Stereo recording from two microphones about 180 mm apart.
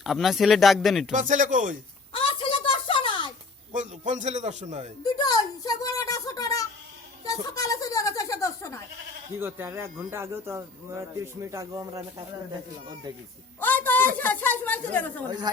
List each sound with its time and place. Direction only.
0.0 s speech: centre (ahead or behind)
1.1 s speech: 45° right (ahead or behind)
2.1 s a sound: 30° left (ahead or behind)
3.7 s a man's voice: 45° right (ahead or behind)
5.0 s speech: 20° left (ahead or behind)
9.4 s speech: 15° right (ahead or behind)
13.6 s a sound: 10° left (ahead or behind)
14.2 s speech: 10° left (ahead or behind)